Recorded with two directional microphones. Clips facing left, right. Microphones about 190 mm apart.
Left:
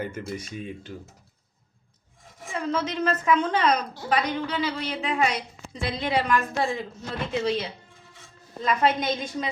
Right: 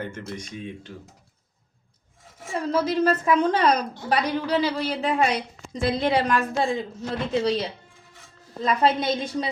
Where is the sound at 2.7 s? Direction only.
35° right (ahead or behind).